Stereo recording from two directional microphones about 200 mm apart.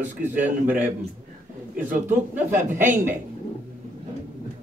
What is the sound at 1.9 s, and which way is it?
Speech, 10° right (ahead or behind).